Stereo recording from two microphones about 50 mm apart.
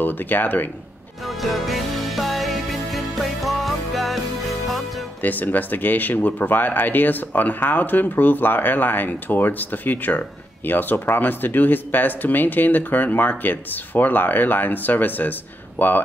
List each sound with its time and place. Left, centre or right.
0.0 s speech: left
1.2 s music: centre
5.2 s speech: left